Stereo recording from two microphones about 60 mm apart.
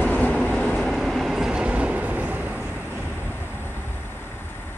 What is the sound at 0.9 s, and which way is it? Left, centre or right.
Train, centre.